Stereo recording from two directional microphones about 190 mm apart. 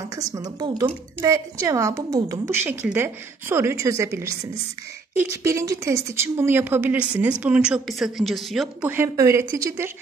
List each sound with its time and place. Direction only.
0.1 s speech: 20° right (ahead or behind)
5.4 s speech: 15° right (ahead or behind)
8.9 s speech: 15° right (ahead or behind)